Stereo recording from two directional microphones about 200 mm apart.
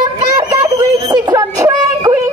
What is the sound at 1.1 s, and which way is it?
Yodeling, 20° right (ahead or behind).